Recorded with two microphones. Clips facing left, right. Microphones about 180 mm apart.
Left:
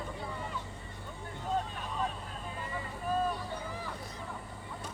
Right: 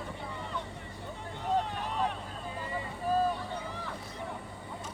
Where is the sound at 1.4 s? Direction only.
70° right (ahead or behind).